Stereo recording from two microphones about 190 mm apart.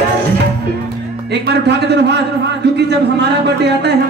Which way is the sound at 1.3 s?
60° right (ahead or behind).